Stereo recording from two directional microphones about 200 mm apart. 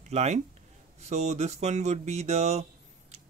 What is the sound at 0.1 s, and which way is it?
Speech, 35° right (ahead or behind).